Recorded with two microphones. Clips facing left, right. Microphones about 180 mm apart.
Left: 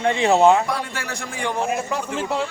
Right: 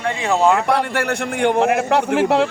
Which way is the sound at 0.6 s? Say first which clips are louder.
Right 8 dB; 65° right (ahead or behind).